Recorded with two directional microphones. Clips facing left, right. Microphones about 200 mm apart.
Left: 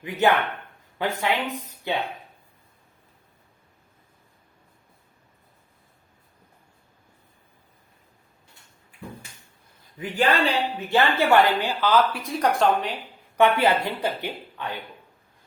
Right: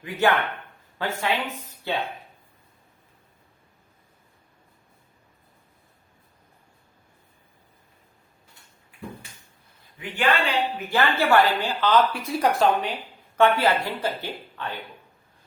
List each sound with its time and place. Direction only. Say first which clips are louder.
0.0 s speech: left 1 dB; 20° left (ahead or behind)
10.0 s a man's voice: left 2 dB; 40° left (ahead or behind)
10.8 s speech: left 3 dB; 25° left (ahead or behind); by 13.0 s centre (ahead or behind)
13.3 s speech: even; 15° left (ahead or behind)